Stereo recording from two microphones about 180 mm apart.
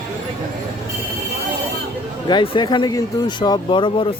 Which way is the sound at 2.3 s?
25° left (ahead or behind).